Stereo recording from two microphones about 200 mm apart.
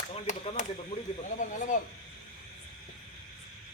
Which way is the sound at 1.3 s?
40° left (ahead or behind).